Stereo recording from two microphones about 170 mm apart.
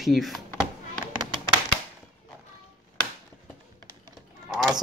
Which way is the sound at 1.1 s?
25° right (ahead or behind).